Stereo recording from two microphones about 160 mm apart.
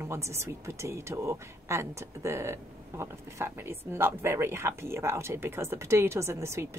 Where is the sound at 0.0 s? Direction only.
15° right (ahead or behind).